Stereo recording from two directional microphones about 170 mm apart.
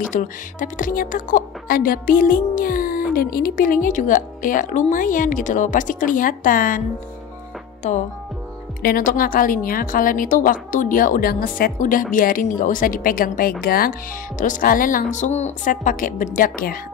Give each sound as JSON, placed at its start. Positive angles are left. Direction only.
{"t": 0.1, "sound": "a woman's voice", "side_deg": 50}
{"t": 8.8, "sound": "a woman's voice", "side_deg": 55}